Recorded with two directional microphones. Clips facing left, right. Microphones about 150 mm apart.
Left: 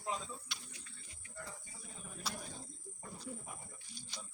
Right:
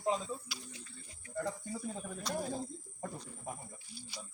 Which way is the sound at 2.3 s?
85° right.